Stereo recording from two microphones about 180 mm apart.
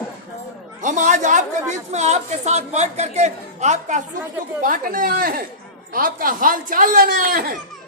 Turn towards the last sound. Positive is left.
turn(degrees=-50)  # may be behind; listen again after turning